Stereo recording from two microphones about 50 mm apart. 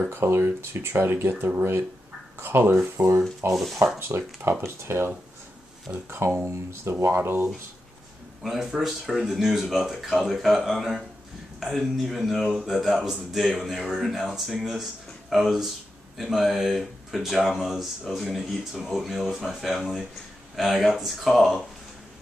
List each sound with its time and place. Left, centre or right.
0.1 s speech: right
3.5 s speech: centre
4.0 s speech: right
7.2 s speech: right
8.4 s speech: centre